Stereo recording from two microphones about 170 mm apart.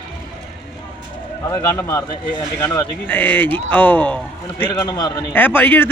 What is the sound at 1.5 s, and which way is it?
A man's voice, 15° left (ahead or behind).